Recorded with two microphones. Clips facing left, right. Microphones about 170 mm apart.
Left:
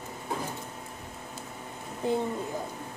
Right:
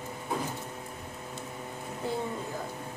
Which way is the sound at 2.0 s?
15° left (ahead or behind).